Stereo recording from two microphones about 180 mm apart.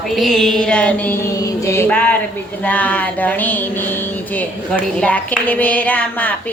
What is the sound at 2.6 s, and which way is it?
A woman's voice, 10° left (ahead or behind).